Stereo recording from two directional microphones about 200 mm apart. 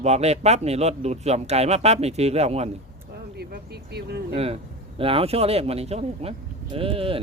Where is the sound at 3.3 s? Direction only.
55° right (ahead or behind).